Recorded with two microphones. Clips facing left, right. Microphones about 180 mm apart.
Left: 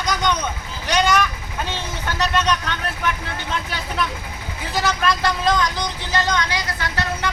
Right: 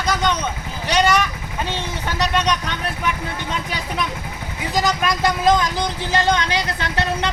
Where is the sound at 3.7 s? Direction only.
15° right (ahead or behind).